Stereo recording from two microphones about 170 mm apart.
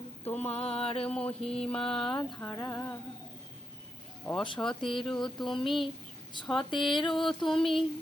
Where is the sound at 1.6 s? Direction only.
5° left (ahead or behind).